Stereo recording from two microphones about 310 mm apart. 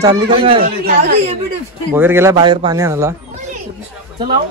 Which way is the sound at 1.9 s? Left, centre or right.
Centre.